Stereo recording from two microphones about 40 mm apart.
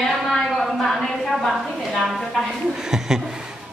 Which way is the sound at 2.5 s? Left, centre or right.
Centre.